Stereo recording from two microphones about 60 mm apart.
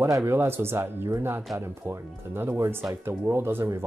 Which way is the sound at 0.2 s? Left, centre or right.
Right.